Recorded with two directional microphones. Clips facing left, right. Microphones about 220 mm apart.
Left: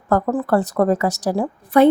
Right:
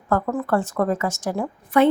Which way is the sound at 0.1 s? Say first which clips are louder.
Left 4 dB; 35° left (ahead or behind).